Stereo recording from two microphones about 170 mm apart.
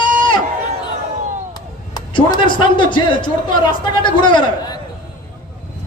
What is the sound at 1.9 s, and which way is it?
A man's voice, 25° left (ahead or behind).